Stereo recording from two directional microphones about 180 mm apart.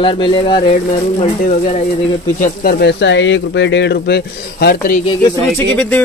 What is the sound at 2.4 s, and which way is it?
Speech, 55° left (ahead or behind).